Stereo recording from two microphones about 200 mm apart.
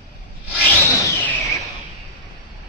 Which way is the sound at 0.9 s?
10° left (ahead or behind).